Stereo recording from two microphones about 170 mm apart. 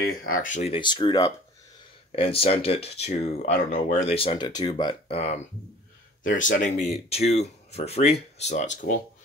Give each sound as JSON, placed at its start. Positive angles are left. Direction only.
{"t": 0.2, "sound": "speech", "side_deg": 55}
{"t": 0.7, "sound": "speech", "side_deg": 30}
{"t": 2.1, "sound": "speech", "side_deg": 35}
{"t": 6.2, "sound": "speech", "side_deg": 50}